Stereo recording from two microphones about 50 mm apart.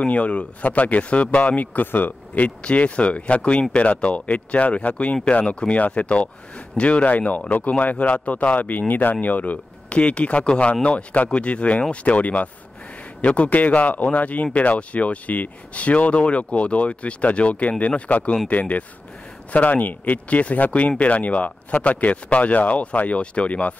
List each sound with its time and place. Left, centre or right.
0.0 s speech: left